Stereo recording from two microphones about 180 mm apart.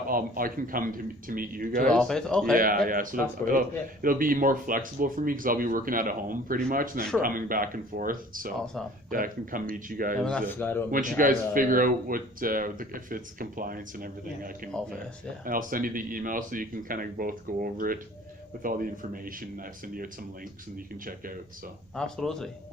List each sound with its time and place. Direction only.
0.1 s speech: 50° right (ahead or behind)
1.9 s speech: 5° left (ahead or behind)
2.6 s speech: 50° right (ahead or behind)
10.2 s a man's voice: 10° left (ahead or behind)
10.9 s speech: 50° right (ahead or behind)
21.9 s speech: 5° left (ahead or behind)